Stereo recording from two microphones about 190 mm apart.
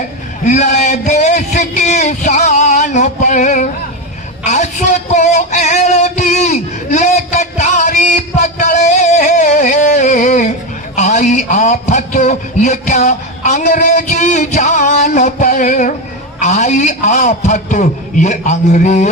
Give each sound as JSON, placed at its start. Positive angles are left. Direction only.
{"t": 0.4, "sound": "a man's voice", "side_deg": 40}
{"t": 4.4, "sound": "music", "side_deg": 35}
{"t": 10.9, "sound": "a man's voice", "side_deg": 40}